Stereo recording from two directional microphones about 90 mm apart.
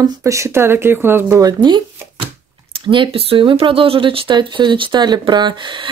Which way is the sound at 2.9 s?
80° right.